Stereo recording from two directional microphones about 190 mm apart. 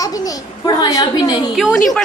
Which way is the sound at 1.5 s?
Centre (ahead or behind).